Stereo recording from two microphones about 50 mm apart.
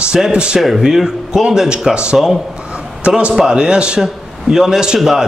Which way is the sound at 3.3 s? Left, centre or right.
Centre.